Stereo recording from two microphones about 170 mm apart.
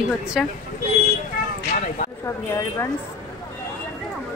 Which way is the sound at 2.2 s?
15° left (ahead or behind).